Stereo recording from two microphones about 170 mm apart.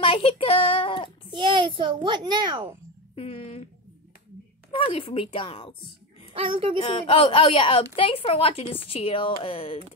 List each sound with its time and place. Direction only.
0.0 s child singing: 35° left (ahead or behind)
1.3 s a child's voice: 25° right (ahead or behind)
3.2 s a woman's voice: 35° left (ahead or behind)
4.6 s a woman's voice: 30° left (ahead or behind)
6.3 s a child's voice: 30° right (ahead or behind)
6.8 s a woman's voice: 35° left (ahead or behind)